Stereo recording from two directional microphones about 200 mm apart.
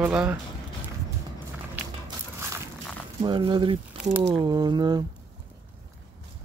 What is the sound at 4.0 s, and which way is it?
Speech, 5° right (ahead or behind).